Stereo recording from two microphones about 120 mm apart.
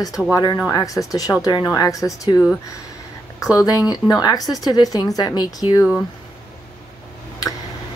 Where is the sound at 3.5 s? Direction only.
30° left (ahead or behind).